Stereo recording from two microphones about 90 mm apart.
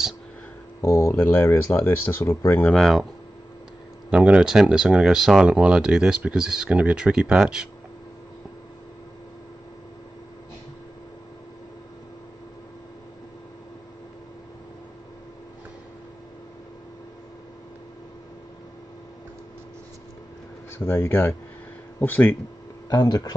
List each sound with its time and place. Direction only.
0.7 s speech: 30° left (ahead or behind)
2.7 s speech: centre (ahead or behind)
4.1 s speech: 10° right (ahead or behind)
20.7 s speech: 25° left (ahead or behind)
22.8 s speech: 45° left (ahead or behind)